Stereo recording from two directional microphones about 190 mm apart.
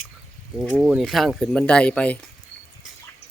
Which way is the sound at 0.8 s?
5° right (ahead or behind).